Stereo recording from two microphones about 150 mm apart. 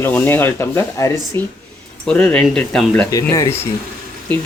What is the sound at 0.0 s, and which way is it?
Speech, 15° left (ahead or behind).